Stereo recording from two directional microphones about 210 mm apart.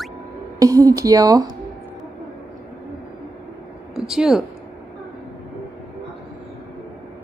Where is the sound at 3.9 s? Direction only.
Centre (ahead or behind).